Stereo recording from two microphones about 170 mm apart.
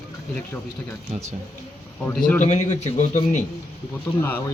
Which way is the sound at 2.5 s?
45° left (ahead or behind).